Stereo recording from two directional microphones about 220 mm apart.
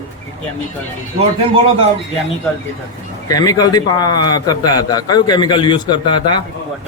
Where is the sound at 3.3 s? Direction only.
15° left (ahead or behind).